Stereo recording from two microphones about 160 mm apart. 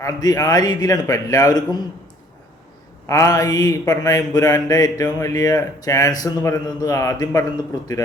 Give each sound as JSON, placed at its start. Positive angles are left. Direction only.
{"t": 0.0, "sound": "speech", "side_deg": 20}
{"t": 3.1, "sound": "speech", "side_deg": 20}